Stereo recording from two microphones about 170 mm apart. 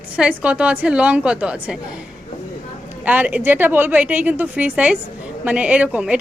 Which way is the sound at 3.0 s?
10° right (ahead or behind).